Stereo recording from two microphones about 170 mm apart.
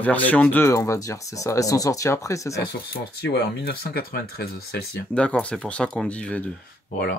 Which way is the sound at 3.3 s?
65° left (ahead or behind).